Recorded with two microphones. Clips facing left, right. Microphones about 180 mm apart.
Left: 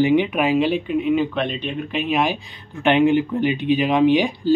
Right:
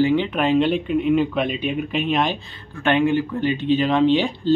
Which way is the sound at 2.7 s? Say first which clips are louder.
Left 3 dB; 20° left (ahead or behind).